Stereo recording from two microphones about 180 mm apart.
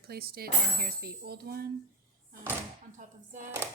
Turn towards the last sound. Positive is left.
turn(degrees=-45)  # may be behind; listen again after turning